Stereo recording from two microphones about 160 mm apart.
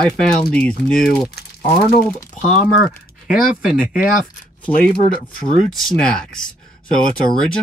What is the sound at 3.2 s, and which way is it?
Speech, centre (ahead or behind).